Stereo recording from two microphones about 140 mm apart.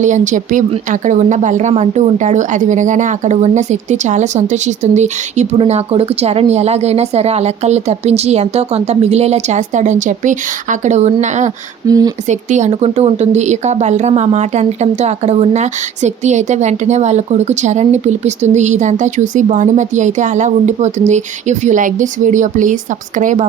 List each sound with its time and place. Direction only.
0.0 s a woman's voice: 65° right (ahead or behind)
11.9 s speech: 25° right (ahead or behind)
12.3 s a woman's voice: 60° right (ahead or behind)